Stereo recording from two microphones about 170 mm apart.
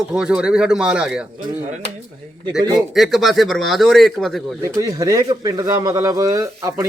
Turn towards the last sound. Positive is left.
turn(degrees=-20)  # may be behind; listen again after turning